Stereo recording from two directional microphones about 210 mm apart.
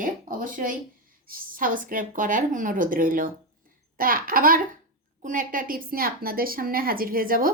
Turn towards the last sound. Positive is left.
turn(degrees=-40)  # may be behind; listen again after turning